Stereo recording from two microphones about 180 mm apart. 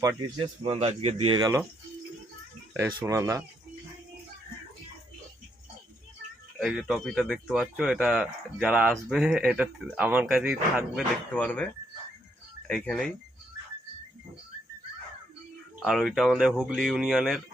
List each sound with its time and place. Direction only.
0.3 s speech: 30° right (ahead or behind)
1.4 s speech: 20° right (ahead or behind)
2.7 s speech: 10° right (ahead or behind)
6.6 s speech: centre (ahead or behind)
11.3 s speech: 10° left (ahead or behind)
15.8 s speech: centre (ahead or behind)